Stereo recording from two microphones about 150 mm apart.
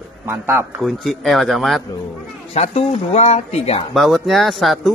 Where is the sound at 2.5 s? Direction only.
45° left (ahead or behind).